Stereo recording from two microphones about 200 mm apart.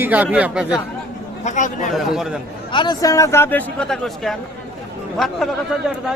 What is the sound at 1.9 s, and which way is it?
Speech, centre (ahead or behind).